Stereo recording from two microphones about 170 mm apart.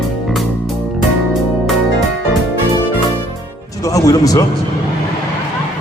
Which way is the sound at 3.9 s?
20° left (ahead or behind).